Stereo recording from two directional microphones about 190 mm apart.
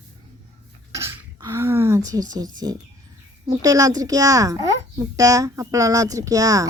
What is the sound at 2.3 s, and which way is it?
A child's voice, 20° right (ahead or behind).